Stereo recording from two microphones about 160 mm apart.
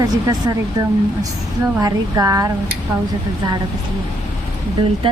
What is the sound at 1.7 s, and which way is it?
Speech, 20° right (ahead or behind).